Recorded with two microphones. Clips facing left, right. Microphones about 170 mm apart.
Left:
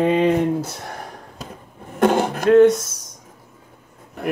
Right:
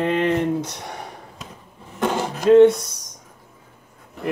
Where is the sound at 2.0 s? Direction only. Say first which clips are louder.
Left 6 dB; 60° left (ahead or behind).